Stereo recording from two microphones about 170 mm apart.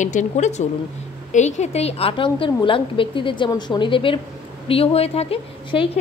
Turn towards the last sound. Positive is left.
turn(degrees=30)  # may be behind; listen again after turning